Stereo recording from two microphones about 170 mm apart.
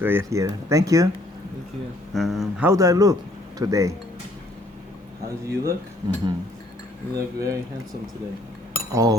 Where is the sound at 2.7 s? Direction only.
20° right (ahead or behind).